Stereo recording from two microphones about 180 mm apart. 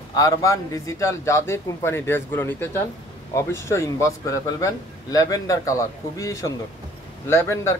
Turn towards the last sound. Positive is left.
turn(degrees=15)  # may be behind; listen again after turning